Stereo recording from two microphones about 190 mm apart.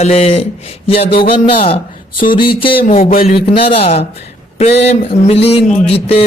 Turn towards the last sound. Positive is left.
turn(degrees=30)  # may be behind; listen again after turning